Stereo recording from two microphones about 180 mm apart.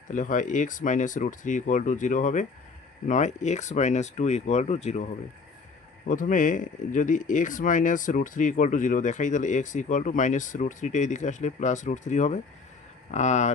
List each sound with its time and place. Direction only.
0.1 s speech: 45° left (ahead or behind)
6.1 s speech: 45° left (ahead or behind)